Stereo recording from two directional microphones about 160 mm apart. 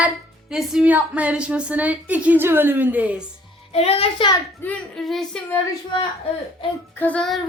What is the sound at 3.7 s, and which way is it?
Speech, 40° left (ahead or behind).